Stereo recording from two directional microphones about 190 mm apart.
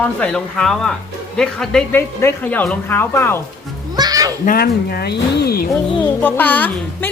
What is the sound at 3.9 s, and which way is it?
Speech, 20° right (ahead or behind).